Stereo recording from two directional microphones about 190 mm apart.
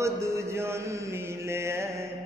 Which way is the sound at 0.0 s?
15° right (ahead or behind).